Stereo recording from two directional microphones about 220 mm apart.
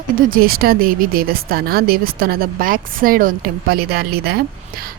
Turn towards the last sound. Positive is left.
turn(degrees=-45)  # may be behind; listen again after turning